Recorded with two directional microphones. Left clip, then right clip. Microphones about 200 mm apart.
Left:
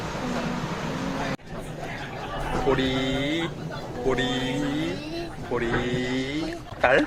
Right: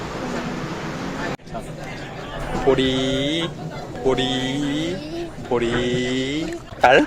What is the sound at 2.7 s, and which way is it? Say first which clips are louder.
Speech: right 5 dB; 15° right (ahead or behind).